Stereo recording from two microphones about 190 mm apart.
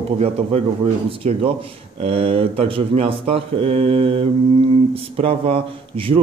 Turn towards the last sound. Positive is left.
turn(degrees=-30)  # may be behind; listen again after turning